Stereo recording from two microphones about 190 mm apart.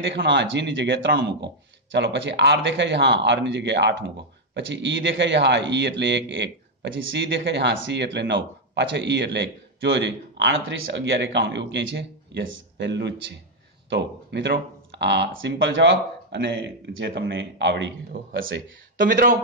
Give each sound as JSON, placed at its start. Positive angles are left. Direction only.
{"t": 0.0, "sound": "a man's voice", "side_deg": -65}
{"t": 18.9, "sound": "speech", "side_deg": -45}